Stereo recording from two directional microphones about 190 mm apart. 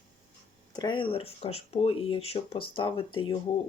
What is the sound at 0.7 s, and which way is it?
Speech, 25° left (ahead or behind).